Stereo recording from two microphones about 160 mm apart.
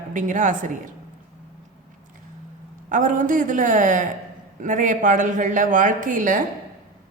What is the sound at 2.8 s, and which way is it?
A woman's voice, 55° right (ahead or behind).